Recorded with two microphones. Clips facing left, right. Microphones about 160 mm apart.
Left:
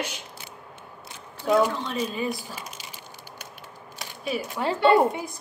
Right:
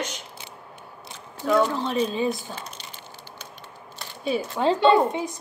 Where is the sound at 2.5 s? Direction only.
10° left (ahead or behind).